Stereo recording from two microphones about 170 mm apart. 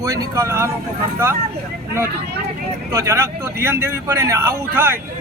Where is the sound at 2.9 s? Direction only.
20° right (ahead or behind).